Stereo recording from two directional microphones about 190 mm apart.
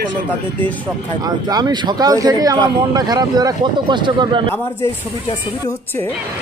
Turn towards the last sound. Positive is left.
turn(degrees=-25)  # may be behind; listen again after turning